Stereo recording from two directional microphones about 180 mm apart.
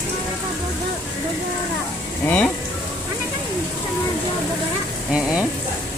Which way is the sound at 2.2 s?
10° left (ahead or behind).